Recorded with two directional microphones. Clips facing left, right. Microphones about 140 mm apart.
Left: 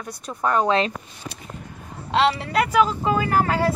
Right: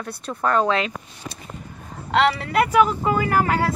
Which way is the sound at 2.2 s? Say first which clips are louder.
Right 1 dB; 20° left (ahead or behind).